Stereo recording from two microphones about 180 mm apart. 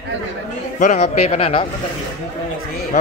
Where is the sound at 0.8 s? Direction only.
40° left (ahead or behind).